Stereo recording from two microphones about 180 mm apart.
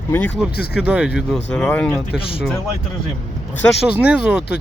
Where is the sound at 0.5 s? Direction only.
60° left (ahead or behind).